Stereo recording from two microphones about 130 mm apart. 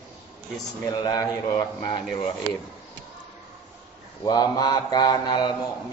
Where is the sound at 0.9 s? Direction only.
30° left (ahead or behind).